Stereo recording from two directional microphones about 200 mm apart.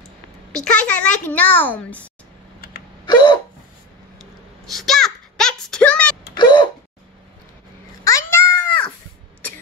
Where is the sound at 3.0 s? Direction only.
20° left (ahead or behind).